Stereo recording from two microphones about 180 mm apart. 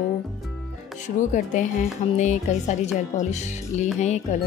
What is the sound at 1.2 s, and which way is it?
A woman's voice, 45° left (ahead or behind).